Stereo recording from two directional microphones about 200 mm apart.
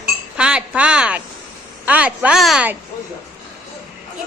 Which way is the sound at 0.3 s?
5° right (ahead or behind).